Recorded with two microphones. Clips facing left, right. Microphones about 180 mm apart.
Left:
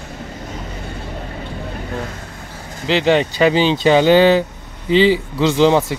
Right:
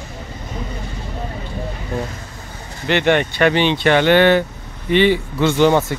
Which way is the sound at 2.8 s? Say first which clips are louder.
Left 1 dB; 90° left.